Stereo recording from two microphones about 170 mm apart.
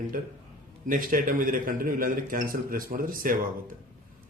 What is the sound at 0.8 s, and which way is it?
A man's voice, 55° right (ahead or behind).